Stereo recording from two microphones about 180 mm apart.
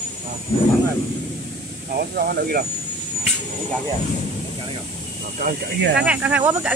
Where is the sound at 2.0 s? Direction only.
55° right (ahead or behind).